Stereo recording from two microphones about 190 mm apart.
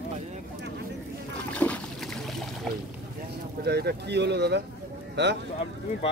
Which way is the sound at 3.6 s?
60° right (ahead or behind).